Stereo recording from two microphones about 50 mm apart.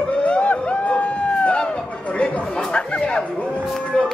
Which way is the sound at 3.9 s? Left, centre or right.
Centre.